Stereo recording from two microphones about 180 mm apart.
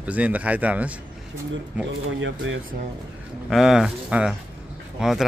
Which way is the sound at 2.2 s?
90° right.